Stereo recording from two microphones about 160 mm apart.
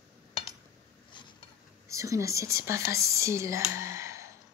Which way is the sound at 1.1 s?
30° left (ahead or behind).